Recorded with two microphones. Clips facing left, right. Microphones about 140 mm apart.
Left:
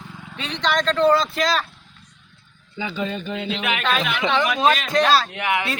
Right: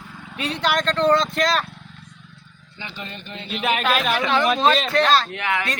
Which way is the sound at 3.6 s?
35° right (ahead or behind).